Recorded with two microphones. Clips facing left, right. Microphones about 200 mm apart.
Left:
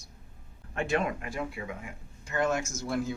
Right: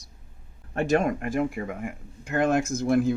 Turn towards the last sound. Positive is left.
turn(degrees=-55)  # may be behind; listen again after turning